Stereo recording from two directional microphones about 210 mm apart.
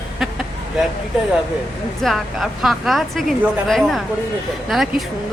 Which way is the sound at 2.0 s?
Centre (ahead or behind).